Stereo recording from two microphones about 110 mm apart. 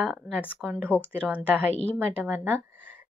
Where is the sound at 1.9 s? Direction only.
15° right (ahead or behind).